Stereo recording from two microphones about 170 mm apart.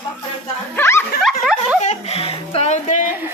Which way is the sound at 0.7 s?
15° left (ahead or behind).